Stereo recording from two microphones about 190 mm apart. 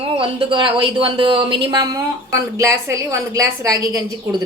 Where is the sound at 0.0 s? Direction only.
25° right (ahead or behind).